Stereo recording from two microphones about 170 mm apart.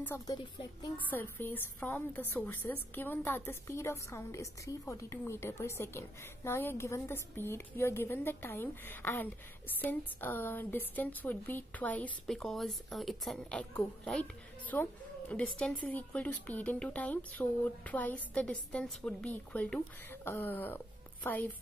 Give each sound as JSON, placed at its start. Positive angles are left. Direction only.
{"t": 0.3, "sound": "speech", "side_deg": 25}
{"t": 0.9, "sound": "a woman's voice", "side_deg": 10}